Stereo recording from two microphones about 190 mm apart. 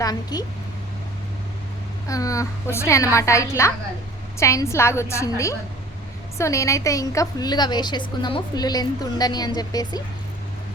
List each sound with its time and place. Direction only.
0.0 s a woman's voice: 20° left (ahead or behind)
2.0 s a woman's voice: 15° left (ahead or behind)